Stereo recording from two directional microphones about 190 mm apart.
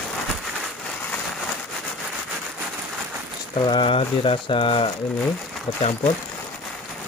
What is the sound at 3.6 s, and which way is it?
Speech, 25° left (ahead or behind).